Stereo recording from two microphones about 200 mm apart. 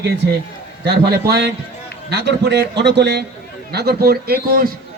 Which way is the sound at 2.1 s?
55° right (ahead or behind).